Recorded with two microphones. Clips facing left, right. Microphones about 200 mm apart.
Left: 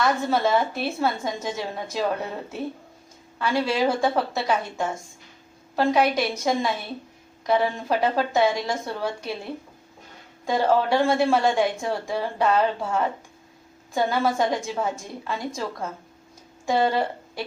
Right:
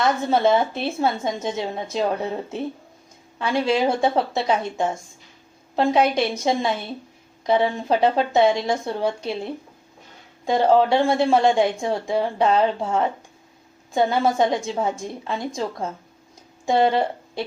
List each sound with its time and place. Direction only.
0.0 s a woman's voice: 25° right (ahead or behind)
3.3 s a woman's voice: 20° right (ahead or behind)
16.6 s a woman's voice: 20° right (ahead or behind)